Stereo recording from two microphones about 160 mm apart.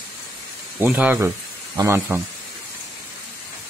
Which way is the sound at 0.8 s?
10° right (ahead or behind).